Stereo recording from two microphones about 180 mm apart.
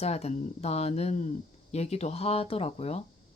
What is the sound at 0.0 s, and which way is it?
Speech, 35° left (ahead or behind).